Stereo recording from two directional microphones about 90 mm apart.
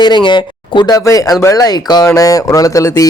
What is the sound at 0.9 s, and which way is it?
Speech, 40° left (ahead or behind).